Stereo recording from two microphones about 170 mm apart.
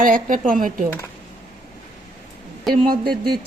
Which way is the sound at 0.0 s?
55° right (ahead or behind).